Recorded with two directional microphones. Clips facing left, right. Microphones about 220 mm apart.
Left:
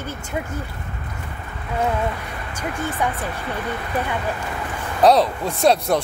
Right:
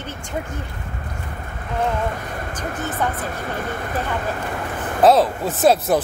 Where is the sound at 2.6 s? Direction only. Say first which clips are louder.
Left 1 dB; 45° right (ahead or behind).